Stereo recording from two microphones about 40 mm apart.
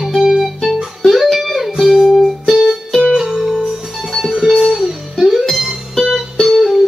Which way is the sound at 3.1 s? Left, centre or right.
Centre.